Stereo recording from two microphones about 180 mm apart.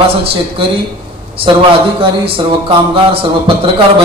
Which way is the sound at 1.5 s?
30° right (ahead or behind).